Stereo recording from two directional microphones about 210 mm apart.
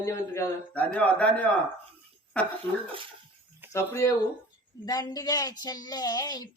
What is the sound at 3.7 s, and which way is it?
A man's voice, 15° left (ahead or behind).